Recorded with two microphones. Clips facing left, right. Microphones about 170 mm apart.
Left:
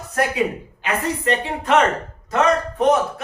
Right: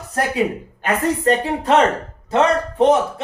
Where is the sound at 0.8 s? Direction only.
40° right (ahead or behind).